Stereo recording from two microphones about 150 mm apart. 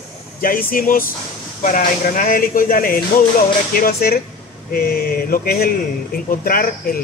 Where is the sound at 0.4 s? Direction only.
75° left (ahead or behind).